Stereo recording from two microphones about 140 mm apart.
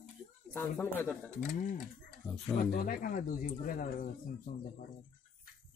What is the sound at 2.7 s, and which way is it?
Speech, 90° left.